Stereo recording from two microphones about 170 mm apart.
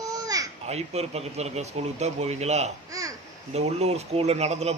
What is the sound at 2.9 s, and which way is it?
Babbling, 20° right (ahead or behind).